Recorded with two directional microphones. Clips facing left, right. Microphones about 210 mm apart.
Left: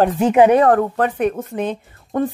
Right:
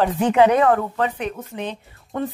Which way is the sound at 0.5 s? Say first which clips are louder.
Left 4 dB; 40° left (ahead or behind).